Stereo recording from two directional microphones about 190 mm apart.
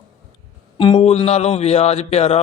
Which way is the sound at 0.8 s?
30° left (ahead or behind).